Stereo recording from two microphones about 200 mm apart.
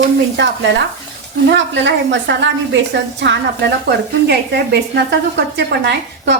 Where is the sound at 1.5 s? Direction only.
65° right (ahead or behind).